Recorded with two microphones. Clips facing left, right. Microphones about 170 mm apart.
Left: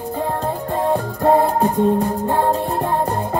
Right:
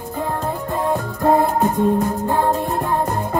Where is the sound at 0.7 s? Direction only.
30° left (ahead or behind).